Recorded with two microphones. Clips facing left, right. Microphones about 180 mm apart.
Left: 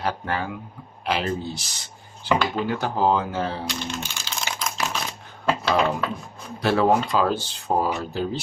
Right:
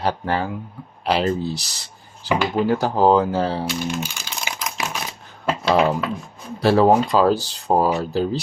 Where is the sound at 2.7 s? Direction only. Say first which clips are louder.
Right 6 dB; 35° right (ahead or behind).